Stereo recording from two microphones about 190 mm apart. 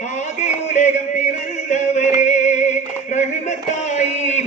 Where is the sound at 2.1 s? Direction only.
40° left (ahead or behind).